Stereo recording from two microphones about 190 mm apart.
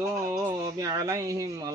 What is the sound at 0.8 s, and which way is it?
Speech, 15° right (ahead or behind).